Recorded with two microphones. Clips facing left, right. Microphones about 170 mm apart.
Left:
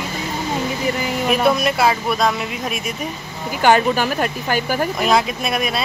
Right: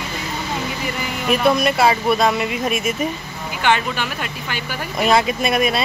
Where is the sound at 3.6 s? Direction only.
40° left (ahead or behind).